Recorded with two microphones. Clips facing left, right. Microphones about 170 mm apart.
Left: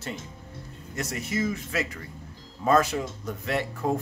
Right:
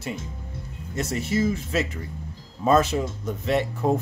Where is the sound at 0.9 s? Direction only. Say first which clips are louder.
Right 5 dB; 30° right (ahead or behind).